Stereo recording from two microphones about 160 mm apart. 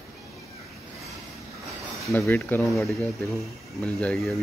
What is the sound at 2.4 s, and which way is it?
Speech, 5° left (ahead or behind).